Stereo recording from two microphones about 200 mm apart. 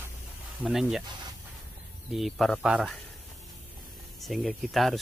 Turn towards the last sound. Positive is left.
turn(degrees=0)  # may be behind; listen again after turning